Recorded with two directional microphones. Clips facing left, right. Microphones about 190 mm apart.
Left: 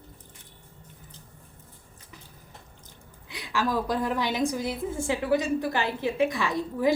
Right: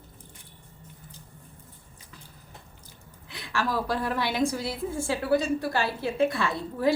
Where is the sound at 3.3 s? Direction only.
15° left (ahead or behind).